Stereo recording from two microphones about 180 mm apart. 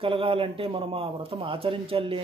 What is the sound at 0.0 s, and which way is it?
Speech, 30° right (ahead or behind).